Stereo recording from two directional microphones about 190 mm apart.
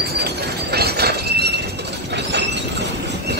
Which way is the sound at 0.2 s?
60° right (ahead or behind).